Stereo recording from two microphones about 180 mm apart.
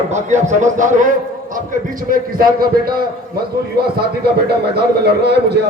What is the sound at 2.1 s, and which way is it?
Speech, 55° right (ahead or behind).